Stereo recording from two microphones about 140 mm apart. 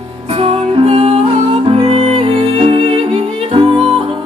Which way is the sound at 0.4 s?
45° right (ahead or behind).